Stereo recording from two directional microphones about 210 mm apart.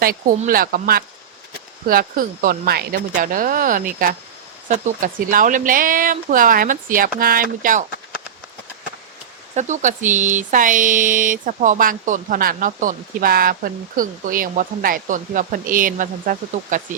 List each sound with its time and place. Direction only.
0.0 s speech: 45° right (ahead or behind)
9.6 s speech: 35° right (ahead or behind)